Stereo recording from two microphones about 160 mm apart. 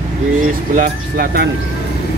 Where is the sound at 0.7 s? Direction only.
75° right (ahead or behind).